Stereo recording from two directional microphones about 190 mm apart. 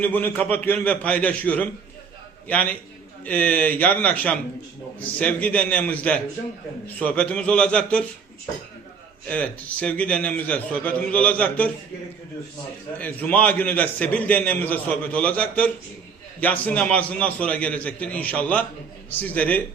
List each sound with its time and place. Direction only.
0.0 s a man's voice: 10° left (ahead or behind)
9.2 s a man's voice: 5° left (ahead or behind)
13.0 s a man's voice: 10° left (ahead or behind)